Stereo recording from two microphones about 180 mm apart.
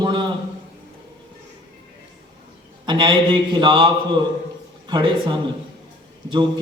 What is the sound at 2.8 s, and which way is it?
A man's voice, 25° right (ahead or behind).